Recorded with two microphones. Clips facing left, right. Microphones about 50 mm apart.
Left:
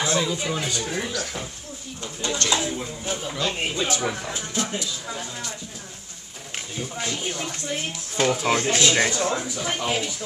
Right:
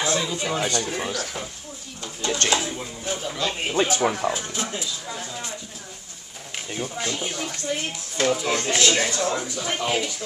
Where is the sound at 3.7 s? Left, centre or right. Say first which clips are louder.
Right 4 dB; right.